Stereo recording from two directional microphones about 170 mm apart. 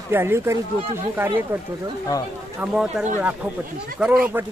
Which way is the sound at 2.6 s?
5° right (ahead or behind).